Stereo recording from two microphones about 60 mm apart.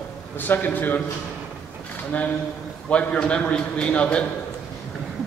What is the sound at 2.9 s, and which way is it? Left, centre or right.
A man's voice, centre.